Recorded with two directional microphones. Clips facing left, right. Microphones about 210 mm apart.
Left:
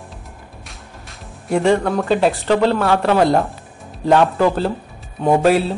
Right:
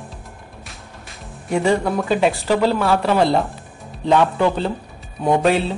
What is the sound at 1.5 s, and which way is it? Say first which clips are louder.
Speech: left 2 dB; centre (ahead or behind).